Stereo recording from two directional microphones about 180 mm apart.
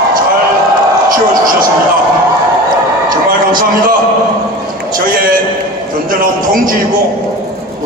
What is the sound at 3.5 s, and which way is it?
Speech, 50° right (ahead or behind).